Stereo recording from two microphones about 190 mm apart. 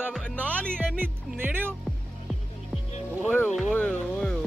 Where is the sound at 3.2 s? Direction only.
5° left (ahead or behind).